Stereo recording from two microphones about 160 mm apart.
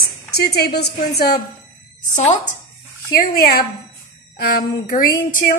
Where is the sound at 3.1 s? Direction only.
65° left (ahead or behind).